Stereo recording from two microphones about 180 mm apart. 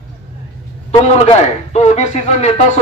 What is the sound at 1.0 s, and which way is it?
Speech, 35° left (ahead or behind).